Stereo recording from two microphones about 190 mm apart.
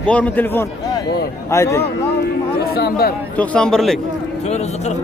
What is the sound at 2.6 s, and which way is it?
Speech, 55° left (ahead or behind).